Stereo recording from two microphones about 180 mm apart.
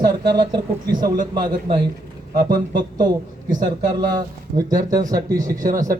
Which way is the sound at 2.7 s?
25° right (ahead or behind).